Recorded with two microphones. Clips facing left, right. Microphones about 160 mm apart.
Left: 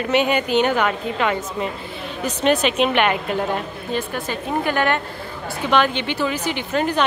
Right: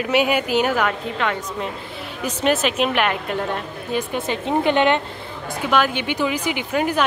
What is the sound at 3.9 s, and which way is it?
A woman's voice, 20° right (ahead or behind).